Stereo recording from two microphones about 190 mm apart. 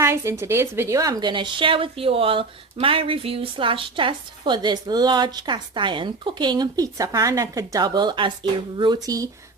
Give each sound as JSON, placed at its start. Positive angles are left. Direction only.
{"t": 0.0, "sound": "a woman's voice", "side_deg": -15}